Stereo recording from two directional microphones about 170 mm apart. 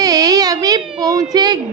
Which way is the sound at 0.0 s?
20° right (ahead or behind).